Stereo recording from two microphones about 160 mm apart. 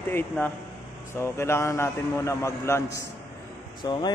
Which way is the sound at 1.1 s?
15° left (ahead or behind).